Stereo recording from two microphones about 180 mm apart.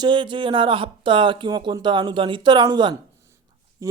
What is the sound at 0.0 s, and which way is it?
Speech, 25° right (ahead or behind).